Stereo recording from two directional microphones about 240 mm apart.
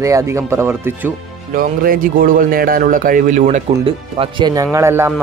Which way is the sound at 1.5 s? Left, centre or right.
Right.